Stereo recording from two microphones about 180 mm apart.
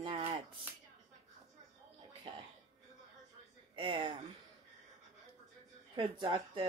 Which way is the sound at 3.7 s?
30° right (ahead or behind).